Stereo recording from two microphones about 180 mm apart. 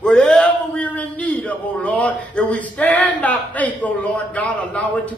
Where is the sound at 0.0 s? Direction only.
5° left (ahead or behind).